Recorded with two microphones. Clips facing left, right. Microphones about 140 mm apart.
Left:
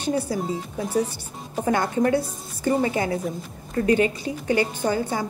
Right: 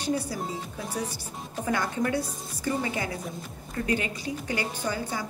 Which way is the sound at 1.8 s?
40° left (ahead or behind).